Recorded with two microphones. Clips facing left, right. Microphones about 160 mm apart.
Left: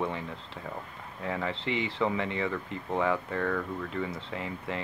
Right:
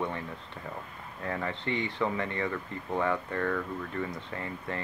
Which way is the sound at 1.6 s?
90° left.